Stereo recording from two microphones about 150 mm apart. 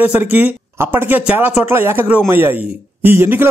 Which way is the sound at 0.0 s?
10° right (ahead or behind).